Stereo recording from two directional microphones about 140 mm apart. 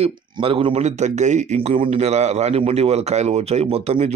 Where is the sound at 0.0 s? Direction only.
40° right (ahead or behind).